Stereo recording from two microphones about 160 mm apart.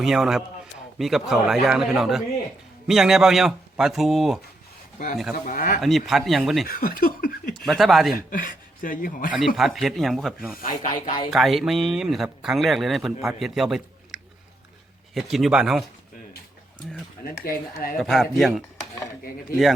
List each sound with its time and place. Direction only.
0.0 s speech: centre (ahead or behind)
5.5 s speech: 60° left (ahead or behind)
5.8 s speech: centre (ahead or behind)
6.7 s speech: 65° left (ahead or behind)
7.5 s speech: centre (ahead or behind)
8.1 s speech: 60° left (ahead or behind)
9.6 s speech: centre (ahead or behind)
10.6 s speech: 60° left (ahead or behind)
11.3 s speech: centre (ahead or behind)
15.1 s speech: centre (ahead or behind)
17.2 s speech: 65° left (ahead or behind)
18.0 s speech: centre (ahead or behind)